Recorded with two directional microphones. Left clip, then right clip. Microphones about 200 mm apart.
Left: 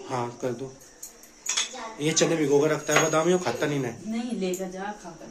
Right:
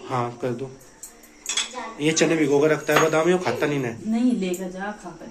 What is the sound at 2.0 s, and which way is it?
Speech, 10° left (ahead or behind).